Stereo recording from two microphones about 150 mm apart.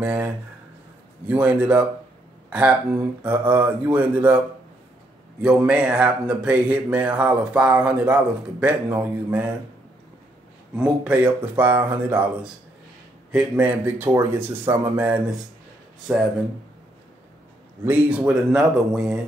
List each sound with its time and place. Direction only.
0.0 s a man's voice: 10° right (ahead or behind)
5.4 s a man's voice: 5° right (ahead or behind)
10.8 s a man's voice: 10° right (ahead or behind)
13.3 s a man's voice: 10° right (ahead or behind)
17.8 s speech: 10° right (ahead or behind)